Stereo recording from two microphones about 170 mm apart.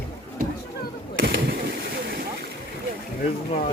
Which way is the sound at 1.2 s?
70° right (ahead or behind).